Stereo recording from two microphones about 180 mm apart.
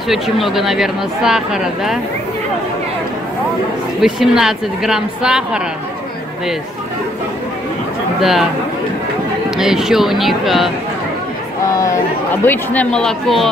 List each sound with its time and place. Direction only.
0.1 s speech: centre (ahead or behind)
4.0 s speech: centre (ahead or behind)
8.2 s speech: centre (ahead or behind)
9.6 s speech: centre (ahead or behind)
11.6 s chatter: 20° left (ahead or behind)
12.4 s speech: 5° left (ahead or behind)